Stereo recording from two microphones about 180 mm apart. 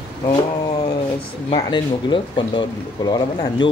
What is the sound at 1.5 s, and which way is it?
Speech, 25° left (ahead or behind).